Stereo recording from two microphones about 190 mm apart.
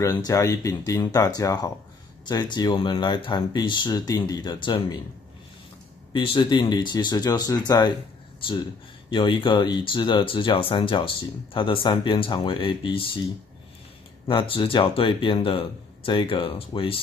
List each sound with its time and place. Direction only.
0.0 s speech: 20° left (ahead or behind)
6.1 s speech: 25° left (ahead or behind)
9.1 s speech: 25° left (ahead or behind)